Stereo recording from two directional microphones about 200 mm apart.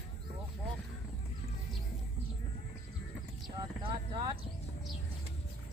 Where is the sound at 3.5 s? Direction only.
25° right (ahead or behind).